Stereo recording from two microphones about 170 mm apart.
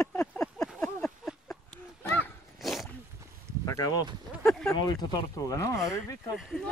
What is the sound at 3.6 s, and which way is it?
Speech, 20° left (ahead or behind).